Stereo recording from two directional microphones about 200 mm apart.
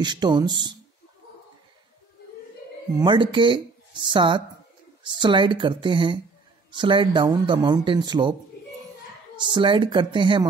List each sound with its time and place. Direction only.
0.0 s speech: 20° right (ahead or behind)
3.0 s speech: 20° right (ahead or behind)
9.4 s speech: 25° right (ahead or behind)